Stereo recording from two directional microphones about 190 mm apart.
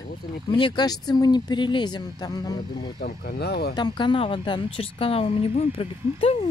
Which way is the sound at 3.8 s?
25° left (ahead or behind).